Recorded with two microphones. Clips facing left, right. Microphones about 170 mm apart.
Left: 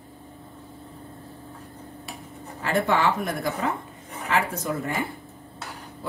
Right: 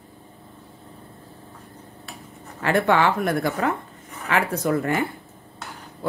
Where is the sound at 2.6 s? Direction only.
70° right (ahead or behind).